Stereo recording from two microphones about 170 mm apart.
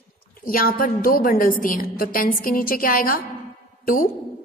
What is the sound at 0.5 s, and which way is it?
A woman's voice, 55° left (ahead or behind).